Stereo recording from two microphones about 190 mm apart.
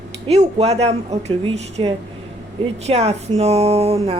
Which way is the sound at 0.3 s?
35° right (ahead or behind).